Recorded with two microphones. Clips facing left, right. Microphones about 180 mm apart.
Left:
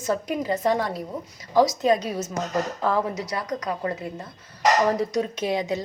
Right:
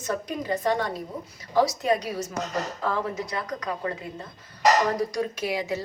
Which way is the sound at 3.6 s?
35° left (ahead or behind).